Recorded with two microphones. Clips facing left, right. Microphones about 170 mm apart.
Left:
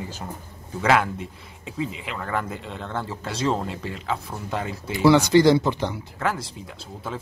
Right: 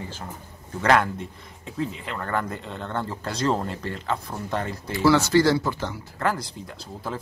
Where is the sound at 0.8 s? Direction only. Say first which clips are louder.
Even; 5° left (ahead or behind).